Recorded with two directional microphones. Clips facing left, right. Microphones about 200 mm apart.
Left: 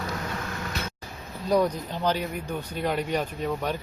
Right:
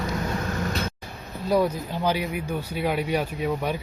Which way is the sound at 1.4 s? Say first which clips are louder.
Right 1 dB; 5° right (ahead or behind).